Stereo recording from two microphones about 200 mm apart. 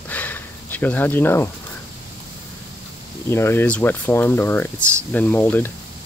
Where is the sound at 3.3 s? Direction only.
10° left (ahead or behind).